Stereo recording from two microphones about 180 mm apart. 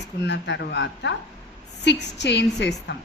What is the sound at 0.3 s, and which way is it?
A woman's voice, 75° left (ahead or behind).